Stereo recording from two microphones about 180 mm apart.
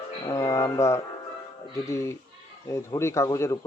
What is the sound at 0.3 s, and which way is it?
Music, 20° left (ahead or behind).